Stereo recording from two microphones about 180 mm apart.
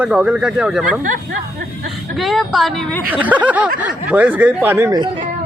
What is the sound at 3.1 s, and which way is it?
A woman's voice, 10° right (ahead or behind).